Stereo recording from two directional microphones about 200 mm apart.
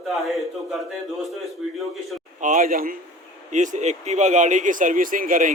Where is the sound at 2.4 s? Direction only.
40° right (ahead or behind).